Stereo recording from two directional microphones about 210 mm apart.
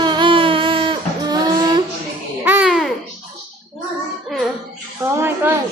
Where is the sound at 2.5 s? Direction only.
5° right (ahead or behind).